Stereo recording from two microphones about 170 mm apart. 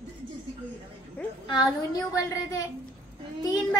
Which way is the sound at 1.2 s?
5° left (ahead or behind).